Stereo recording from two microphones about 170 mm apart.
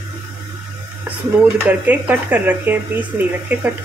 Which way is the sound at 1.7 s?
10° right (ahead or behind).